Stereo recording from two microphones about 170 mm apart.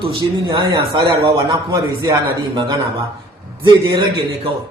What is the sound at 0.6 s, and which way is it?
A man's voice, 25° right (ahead or behind).